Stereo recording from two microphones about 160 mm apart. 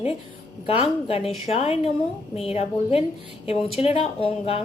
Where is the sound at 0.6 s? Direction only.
35° left (ahead or behind).